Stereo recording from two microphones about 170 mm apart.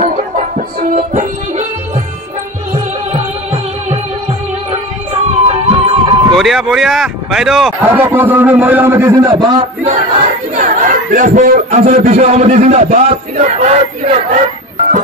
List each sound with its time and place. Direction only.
0.0 s music: 50° right (ahead or behind)
2.7 s music: 40° right (ahead or behind)
5.1 s music: 35° right (ahead or behind)
6.3 s speech: centre (ahead or behind)
7.8 s a man's voice: 10° right (ahead or behind)
10.5 s a man's voice: 45° right (ahead or behind)